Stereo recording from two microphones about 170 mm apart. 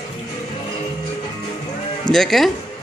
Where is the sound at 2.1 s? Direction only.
Centre (ahead or behind).